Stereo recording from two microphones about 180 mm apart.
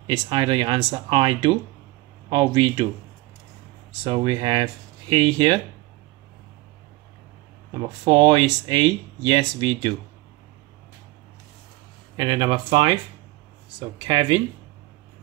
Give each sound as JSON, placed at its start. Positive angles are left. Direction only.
{"t": 0.0, "sound": "speech", "side_deg": -25}
{"t": 4.0, "sound": "speech", "side_deg": -25}
{"t": 7.7, "sound": "speech", "side_deg": -25}
{"t": 12.2, "sound": "speech", "side_deg": -30}